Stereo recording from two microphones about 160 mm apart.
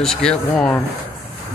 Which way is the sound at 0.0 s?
5° left (ahead or behind).